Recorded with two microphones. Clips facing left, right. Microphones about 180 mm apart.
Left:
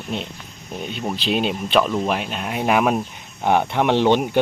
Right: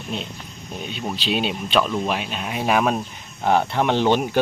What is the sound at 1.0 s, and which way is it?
Speech, 5° left (ahead or behind).